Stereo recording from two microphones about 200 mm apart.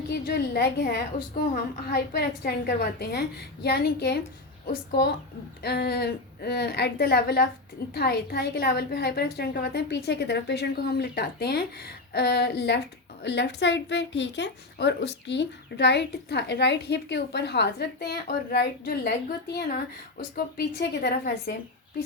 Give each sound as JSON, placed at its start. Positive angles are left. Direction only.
{"t": 0.1, "sound": "a woman's voice", "side_deg": 50}